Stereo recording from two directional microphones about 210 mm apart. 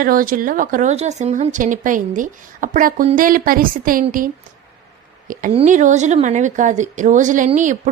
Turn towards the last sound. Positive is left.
turn(degrees=-35)  # may be behind; listen again after turning